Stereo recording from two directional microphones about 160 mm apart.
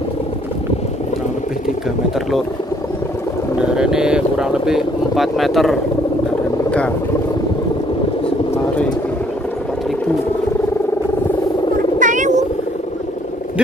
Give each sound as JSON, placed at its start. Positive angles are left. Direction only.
{"t": 3.6, "sound": "speech", "side_deg": -5}
{"t": 12.0, "sound": "cat", "side_deg": -50}